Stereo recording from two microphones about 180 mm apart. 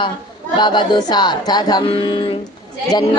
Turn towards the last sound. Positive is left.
turn(degrees=25)  # may be behind; listen again after turning